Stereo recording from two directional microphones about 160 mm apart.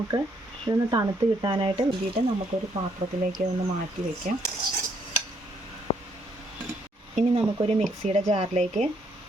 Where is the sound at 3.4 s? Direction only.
50° right (ahead or behind).